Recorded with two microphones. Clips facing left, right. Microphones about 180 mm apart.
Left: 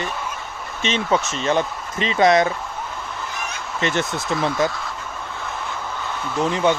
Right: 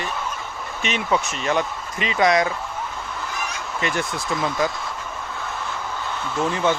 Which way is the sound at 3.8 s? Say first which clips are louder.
Left 3 dB; 25° left (ahead or behind).